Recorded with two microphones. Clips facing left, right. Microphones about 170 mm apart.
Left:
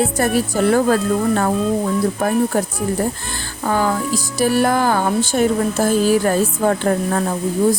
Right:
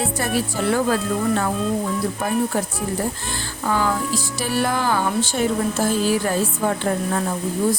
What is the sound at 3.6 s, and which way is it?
Speech, 45° left (ahead or behind).